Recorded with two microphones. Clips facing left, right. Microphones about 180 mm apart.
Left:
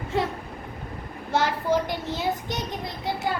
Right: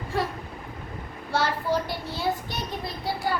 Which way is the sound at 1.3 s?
20° left (ahead or behind).